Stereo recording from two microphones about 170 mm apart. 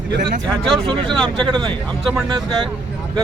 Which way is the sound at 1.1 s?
5° left (ahead or behind).